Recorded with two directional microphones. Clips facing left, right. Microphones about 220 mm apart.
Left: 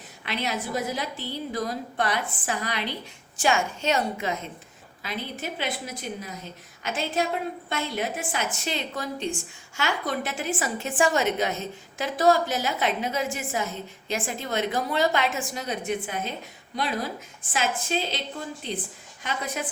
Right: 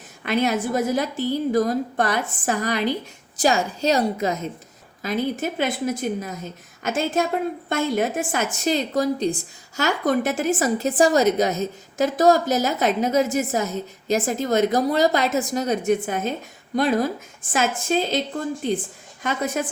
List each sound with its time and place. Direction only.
0.3 s a woman's voice: 50° right (ahead or behind)